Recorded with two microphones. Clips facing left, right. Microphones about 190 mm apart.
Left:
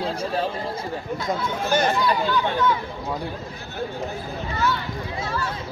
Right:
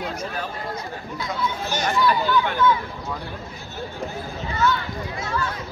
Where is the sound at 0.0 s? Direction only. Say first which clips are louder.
Left 4 dB; 30° left (ahead or behind).